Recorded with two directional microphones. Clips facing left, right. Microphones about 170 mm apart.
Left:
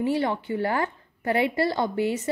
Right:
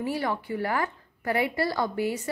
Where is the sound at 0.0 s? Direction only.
25° left (ahead or behind).